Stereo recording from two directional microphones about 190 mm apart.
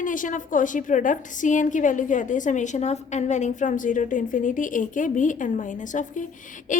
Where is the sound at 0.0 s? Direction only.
45° left (ahead or behind).